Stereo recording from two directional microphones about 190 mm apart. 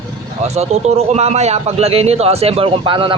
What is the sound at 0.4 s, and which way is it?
A man's voice, 35° right (ahead or behind).